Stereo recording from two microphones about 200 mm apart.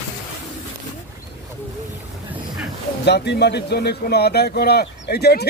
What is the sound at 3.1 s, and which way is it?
Speech, 55° left (ahead or behind).